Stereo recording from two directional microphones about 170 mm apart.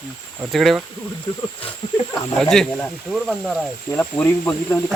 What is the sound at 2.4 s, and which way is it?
Speech, centre (ahead or behind).